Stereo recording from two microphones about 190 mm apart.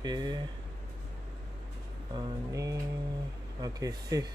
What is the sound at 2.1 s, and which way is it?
Music, 20° right (ahead or behind).